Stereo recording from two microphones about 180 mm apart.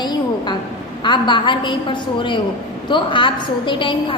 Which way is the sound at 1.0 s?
25° left (ahead or behind).